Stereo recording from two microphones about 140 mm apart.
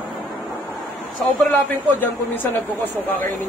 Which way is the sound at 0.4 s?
Centre (ahead or behind).